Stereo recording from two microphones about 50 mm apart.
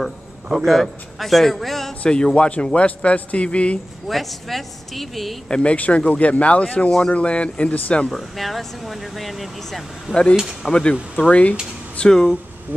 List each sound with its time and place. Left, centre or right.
0.0 s a man's voice: centre
2.0 s speech: centre
4.1 s speech: centre
5.5 s speech: left
8.1 s speech: centre
10.7 s speech: centre
12.0 s speech: centre